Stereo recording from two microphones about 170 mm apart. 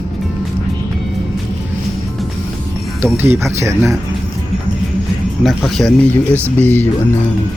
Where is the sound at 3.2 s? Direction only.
15° right (ahead or behind).